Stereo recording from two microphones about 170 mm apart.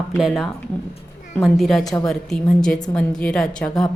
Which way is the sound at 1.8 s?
20° left (ahead or behind).